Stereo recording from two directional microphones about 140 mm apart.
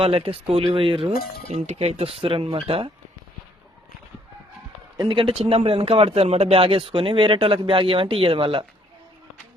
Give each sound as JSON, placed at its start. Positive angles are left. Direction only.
{"t": 0.0, "sound": "speech", "side_deg": -45}
{"t": 1.5, "sound": "speech", "side_deg": -50}
{"t": 4.9, "sound": "speech", "side_deg": -35}